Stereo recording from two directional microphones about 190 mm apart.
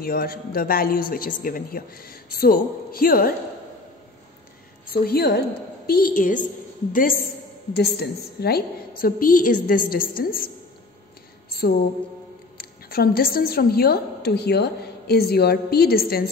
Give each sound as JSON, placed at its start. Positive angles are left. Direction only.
{"t": 0.0, "sound": "speech", "side_deg": 50}
{"t": 5.0, "sound": "a woman's voice", "side_deg": 55}
{"t": 7.7, "sound": "speech", "side_deg": 60}
{"t": 12.5, "sound": "a woman's voice", "side_deg": 55}